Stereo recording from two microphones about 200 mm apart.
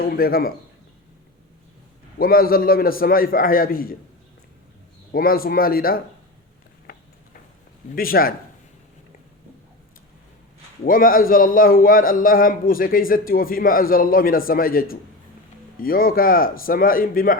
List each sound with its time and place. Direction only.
0.0 s a man's voice: 45° left (ahead or behind)
2.1 s a man's voice: 50° left (ahead or behind)
5.1 s a man's voice: 45° left (ahead or behind)
6.9 s a sound: 45° left (ahead or behind)
7.9 s a man's voice: 45° left (ahead or behind)
10.8 s a man's voice: 45° left (ahead or behind)